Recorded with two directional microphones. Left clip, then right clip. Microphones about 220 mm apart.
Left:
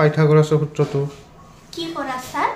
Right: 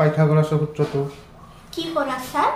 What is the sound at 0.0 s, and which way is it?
Speech, 40° left (ahead or behind).